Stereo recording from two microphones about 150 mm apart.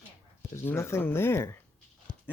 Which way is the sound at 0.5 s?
15° left (ahead or behind).